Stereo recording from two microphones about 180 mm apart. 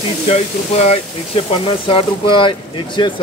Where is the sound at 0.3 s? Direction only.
35° left (ahead or behind).